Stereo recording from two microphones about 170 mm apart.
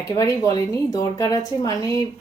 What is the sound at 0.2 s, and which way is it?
A woman's voice, 20° left (ahead or behind).